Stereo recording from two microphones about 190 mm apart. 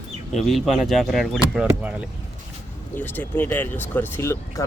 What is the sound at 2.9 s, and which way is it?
Speech, 10° left (ahead or behind).